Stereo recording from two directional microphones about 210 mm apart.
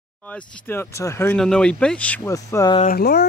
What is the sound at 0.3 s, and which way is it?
Speech, 10° left (ahead or behind).